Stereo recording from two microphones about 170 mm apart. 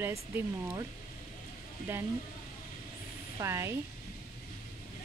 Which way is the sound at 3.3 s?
15° right (ahead or behind).